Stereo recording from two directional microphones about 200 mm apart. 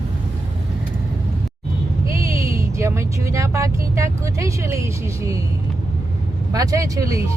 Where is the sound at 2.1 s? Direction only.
15° right (ahead or behind).